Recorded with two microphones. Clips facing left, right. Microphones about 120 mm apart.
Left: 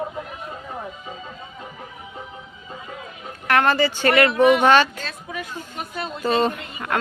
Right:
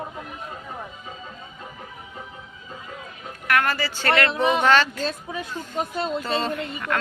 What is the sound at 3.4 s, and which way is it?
Speech, 30° left (ahead or behind).